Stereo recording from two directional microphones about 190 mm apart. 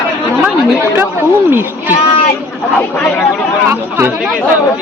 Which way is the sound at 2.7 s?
10° left (ahead or behind).